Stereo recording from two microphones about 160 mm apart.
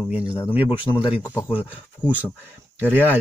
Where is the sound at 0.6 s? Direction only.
30° left (ahead or behind).